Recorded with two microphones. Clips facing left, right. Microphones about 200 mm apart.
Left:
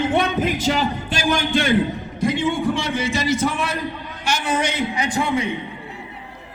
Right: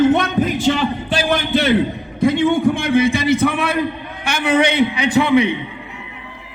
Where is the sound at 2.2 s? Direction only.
60° right (ahead or behind).